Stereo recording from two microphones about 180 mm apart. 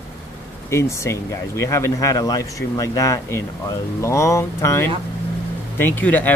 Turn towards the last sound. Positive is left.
turn(degrees=10)  # may be behind; listen again after turning